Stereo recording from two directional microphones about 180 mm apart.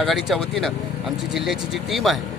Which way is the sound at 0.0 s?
Centre (ahead or behind).